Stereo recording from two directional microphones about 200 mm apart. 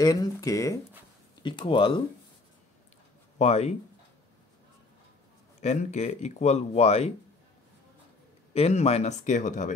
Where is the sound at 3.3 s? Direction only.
30° left (ahead or behind).